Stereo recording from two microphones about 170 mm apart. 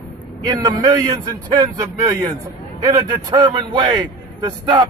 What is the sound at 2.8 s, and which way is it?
A man's voice, 20° right (ahead or behind).